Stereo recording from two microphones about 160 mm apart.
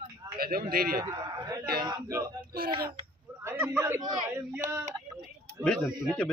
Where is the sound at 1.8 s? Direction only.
25° right (ahead or behind).